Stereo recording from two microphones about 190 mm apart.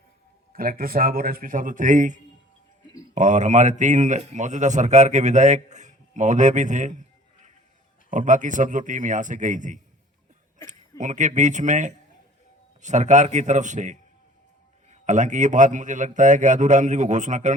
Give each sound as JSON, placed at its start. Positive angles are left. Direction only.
{"t": 0.5, "sound": "a man's voice", "side_deg": -50}
{"t": 8.1, "sound": "speech", "side_deg": -40}